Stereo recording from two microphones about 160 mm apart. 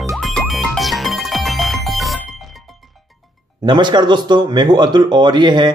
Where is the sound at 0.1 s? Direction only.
Centre (ahead or behind).